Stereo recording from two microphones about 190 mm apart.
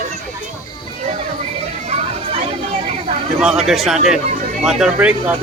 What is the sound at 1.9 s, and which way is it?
Children playing, 35° right (ahead or behind).